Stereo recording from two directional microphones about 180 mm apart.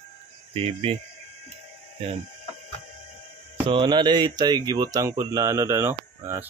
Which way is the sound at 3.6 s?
25° right (ahead or behind).